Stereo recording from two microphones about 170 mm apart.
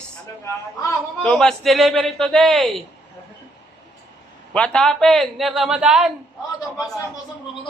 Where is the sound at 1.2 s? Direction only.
5° left (ahead or behind).